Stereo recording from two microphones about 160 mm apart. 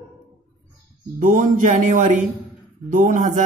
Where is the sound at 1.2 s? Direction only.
55° right (ahead or behind).